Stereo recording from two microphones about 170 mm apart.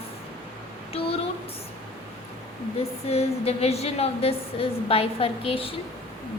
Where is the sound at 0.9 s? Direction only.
35° left (ahead or behind).